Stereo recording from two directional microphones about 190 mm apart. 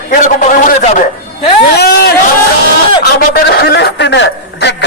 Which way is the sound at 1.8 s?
60° left (ahead or behind).